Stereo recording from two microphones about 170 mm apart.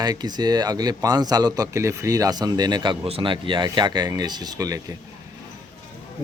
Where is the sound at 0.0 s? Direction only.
25° right (ahead or behind).